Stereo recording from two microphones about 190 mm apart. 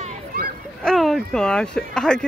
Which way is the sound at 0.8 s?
Centre (ahead or behind).